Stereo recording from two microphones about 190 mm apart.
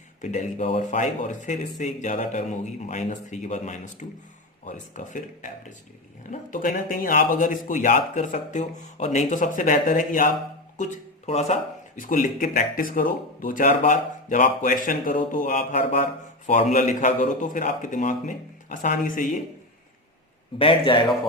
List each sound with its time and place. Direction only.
0.2 s speech: 40° left (ahead or behind)
11.3 s speech: 35° left (ahead or behind)
20.6 s speech: 25° left (ahead or behind)